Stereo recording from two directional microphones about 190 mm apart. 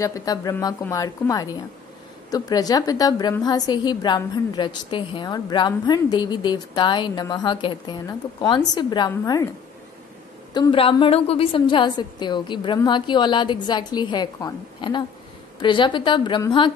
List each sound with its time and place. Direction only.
0.0 s a woman's voice: 20° left (ahead or behind)
10.5 s a woman's voice: 25° left (ahead or behind)